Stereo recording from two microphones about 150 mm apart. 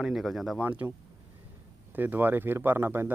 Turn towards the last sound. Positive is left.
turn(degrees=-15)  # may be behind; listen again after turning